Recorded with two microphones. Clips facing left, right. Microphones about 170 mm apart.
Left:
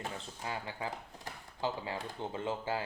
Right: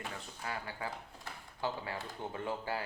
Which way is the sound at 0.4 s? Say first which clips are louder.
Left 1 dB; 20° left (ahead or behind).